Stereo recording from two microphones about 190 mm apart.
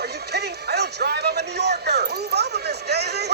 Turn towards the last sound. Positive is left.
turn(degrees=-60)  # may be behind; listen again after turning